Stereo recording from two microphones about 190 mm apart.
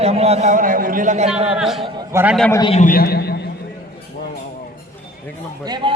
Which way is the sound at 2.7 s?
45° left (ahead or behind).